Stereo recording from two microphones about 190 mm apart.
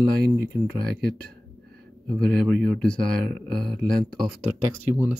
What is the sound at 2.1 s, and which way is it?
Speech, 5° left (ahead or behind).